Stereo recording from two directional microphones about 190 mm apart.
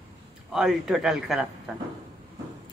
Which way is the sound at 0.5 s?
Centre (ahead or behind).